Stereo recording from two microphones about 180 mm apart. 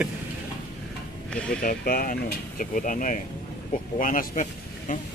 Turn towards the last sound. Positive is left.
turn(degrees=45)  # may be behind; listen again after turning